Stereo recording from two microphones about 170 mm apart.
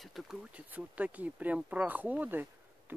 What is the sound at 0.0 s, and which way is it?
Speech, centre (ahead or behind).